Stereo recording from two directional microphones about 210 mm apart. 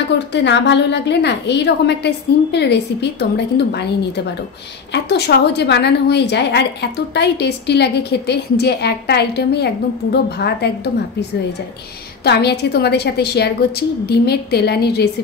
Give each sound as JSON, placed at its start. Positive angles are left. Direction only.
{"t": 0.3, "sound": "a woman's voice", "side_deg": 55}